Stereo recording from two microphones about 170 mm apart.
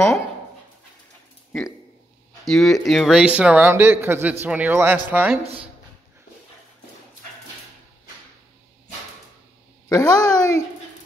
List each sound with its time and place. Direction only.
2.4 s speech: centre (ahead or behind)
9.8 s speech: 20° left (ahead or behind)